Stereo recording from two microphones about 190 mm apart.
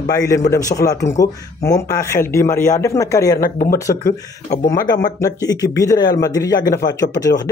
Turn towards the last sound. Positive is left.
turn(degrees=20)  # may be behind; listen again after turning